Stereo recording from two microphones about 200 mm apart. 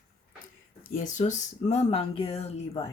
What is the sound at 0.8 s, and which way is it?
Speech, 40° left (ahead or behind).